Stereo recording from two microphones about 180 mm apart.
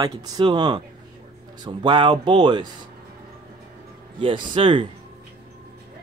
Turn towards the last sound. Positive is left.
turn(degrees=-30)  # may be behind; listen again after turning